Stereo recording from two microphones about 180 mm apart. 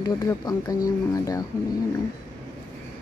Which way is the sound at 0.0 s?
20° left (ahead or behind).